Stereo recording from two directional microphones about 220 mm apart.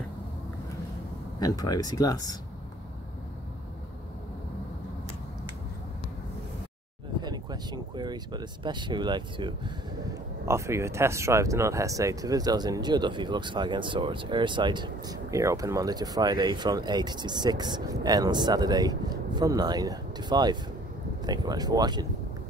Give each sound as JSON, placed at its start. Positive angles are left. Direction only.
{"t": 1.4, "sound": "speech", "side_deg": 15}
{"t": 7.2, "sound": "speech", "side_deg": -20}